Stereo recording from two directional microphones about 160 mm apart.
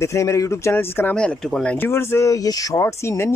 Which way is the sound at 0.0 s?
20° left (ahead or behind).